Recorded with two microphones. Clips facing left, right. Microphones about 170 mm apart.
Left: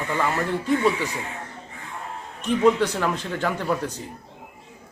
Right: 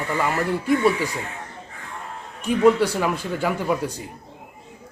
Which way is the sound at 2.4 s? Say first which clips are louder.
Right 2 dB; 10° right (ahead or behind).